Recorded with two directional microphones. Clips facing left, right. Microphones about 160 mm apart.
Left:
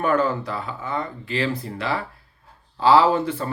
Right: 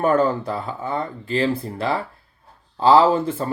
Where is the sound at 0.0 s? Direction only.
35° right (ahead or behind).